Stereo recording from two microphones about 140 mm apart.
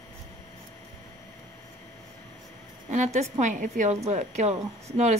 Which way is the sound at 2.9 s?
55° right (ahead or behind).